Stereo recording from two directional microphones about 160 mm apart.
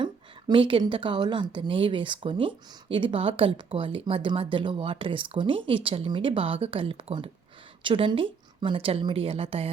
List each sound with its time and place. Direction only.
0.0 s speech: 30° right (ahead or behind)